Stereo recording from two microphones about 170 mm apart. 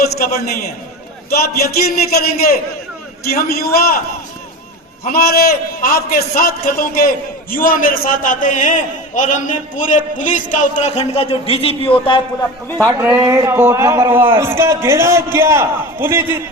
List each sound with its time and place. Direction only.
0.2 s a man's voice: 65° left (ahead or behind)
1.8 s a man's voice: 65° left (ahead or behind)
5.0 s a man's voice: 60° left (ahead or behind); by 12.2 s 30° left (ahead or behind)
12.6 s a man's voice: 10° left (ahead or behind)
13.0 s a man's voice: 10° right (ahead or behind)